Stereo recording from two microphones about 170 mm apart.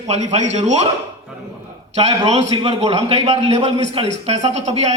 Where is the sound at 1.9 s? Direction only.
40° right (ahead or behind).